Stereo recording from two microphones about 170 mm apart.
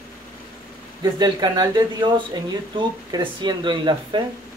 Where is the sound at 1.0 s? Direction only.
25° right (ahead or behind).